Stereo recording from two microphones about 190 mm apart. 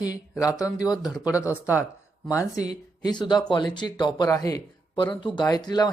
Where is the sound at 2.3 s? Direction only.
15° left (ahead or behind).